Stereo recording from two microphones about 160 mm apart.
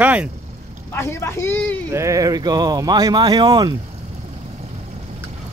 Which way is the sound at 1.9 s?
20° right (ahead or behind).